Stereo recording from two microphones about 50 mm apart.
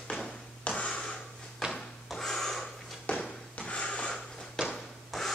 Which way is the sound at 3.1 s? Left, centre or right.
Left.